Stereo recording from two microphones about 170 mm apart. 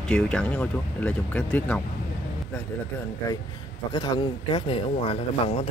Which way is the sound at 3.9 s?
25° left (ahead or behind).